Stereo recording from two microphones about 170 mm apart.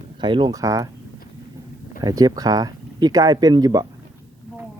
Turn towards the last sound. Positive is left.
turn(degrees=-20)  # may be behind; listen again after turning